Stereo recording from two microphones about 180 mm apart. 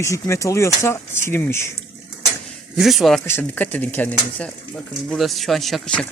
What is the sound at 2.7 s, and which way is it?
Speech, centre (ahead or behind).